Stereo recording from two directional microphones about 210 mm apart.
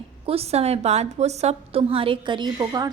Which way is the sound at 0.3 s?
30° right (ahead or behind).